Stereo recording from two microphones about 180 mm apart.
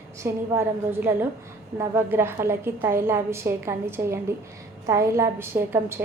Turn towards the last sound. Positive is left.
turn(degrees=-10)  # may be behind; listen again after turning